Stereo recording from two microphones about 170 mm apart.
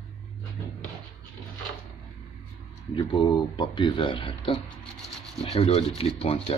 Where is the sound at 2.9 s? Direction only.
25° left (ahead or behind).